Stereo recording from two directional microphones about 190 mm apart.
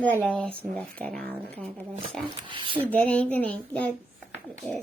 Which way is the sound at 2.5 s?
25° right (ahead or behind).